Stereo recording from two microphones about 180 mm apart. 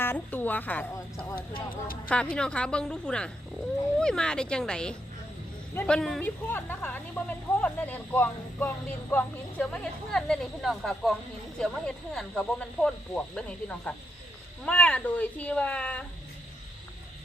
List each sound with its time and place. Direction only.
0.0 s a woman's voice: 10° left (ahead or behind)